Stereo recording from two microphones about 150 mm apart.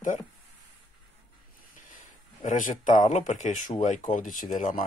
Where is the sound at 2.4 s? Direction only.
60° left (ahead or behind).